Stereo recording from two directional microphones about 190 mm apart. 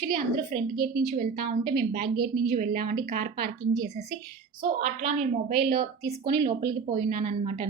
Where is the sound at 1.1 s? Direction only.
50° right (ahead or behind).